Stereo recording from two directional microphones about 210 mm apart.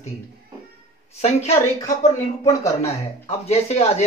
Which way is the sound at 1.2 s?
30° left (ahead or behind).